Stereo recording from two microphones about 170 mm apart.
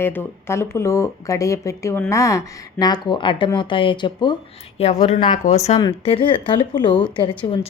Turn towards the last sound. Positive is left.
turn(degrees=30)  # may be behind; listen again after turning